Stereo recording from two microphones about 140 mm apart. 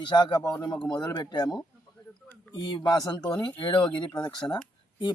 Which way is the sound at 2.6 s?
30° left (ahead or behind).